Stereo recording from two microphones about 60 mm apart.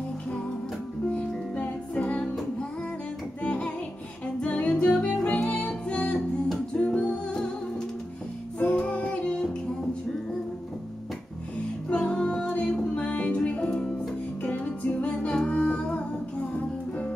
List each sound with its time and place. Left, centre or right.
1.1 s music: left
3.4 s music: left
8.5 s music: left
11.9 s music: left